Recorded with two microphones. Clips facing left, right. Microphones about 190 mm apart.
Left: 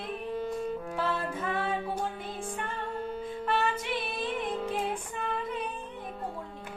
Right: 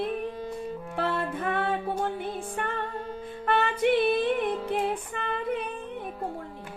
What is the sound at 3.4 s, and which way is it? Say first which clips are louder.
Female singing: right 7 dB; 60° right (ahead or behind).